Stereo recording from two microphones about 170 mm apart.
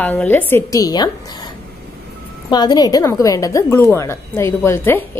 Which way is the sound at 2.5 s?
25° left (ahead or behind).